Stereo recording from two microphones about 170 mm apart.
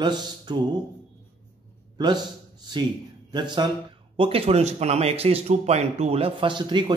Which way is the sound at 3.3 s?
25° right (ahead or behind).